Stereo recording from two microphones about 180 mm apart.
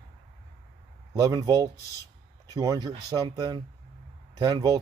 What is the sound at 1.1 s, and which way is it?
Speech, 20° right (ahead or behind).